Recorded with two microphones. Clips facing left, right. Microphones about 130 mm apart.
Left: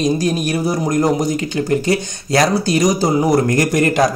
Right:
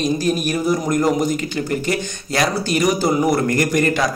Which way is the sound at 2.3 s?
35° left (ahead or behind).